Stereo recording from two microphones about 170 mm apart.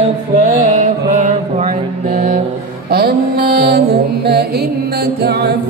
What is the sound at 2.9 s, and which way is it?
Music, 65° right (ahead or behind).